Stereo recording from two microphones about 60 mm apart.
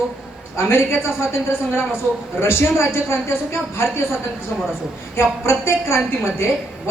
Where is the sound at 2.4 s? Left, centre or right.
Left.